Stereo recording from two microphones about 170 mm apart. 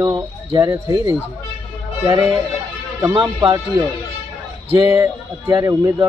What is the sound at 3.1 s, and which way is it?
Speech, 30° right (ahead or behind).